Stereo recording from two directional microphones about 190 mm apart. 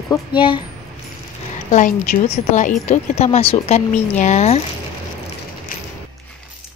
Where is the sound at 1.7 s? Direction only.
45° left (ahead or behind).